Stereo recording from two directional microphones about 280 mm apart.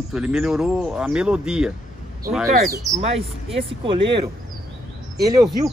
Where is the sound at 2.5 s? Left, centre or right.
Right.